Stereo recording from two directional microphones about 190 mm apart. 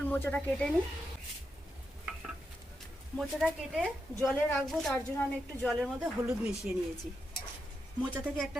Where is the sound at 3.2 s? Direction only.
Centre (ahead or behind).